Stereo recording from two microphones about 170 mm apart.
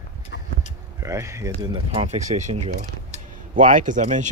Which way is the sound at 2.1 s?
45° right (ahead or behind).